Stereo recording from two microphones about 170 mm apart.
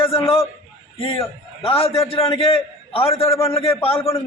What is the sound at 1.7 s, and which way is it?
A man's voice, 35° left (ahead or behind).